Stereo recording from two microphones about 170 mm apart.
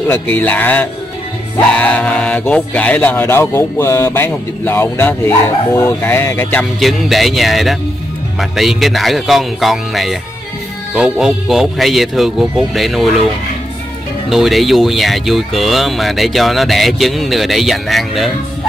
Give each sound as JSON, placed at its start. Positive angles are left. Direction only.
{"t": 0.1, "sound": "speech", "side_deg": 10}
{"t": 6.8, "sound": "speech", "side_deg": 0}
{"t": 14.3, "sound": "speech", "side_deg": 0}